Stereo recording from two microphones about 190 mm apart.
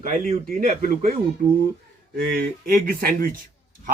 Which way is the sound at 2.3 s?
50° right (ahead or behind).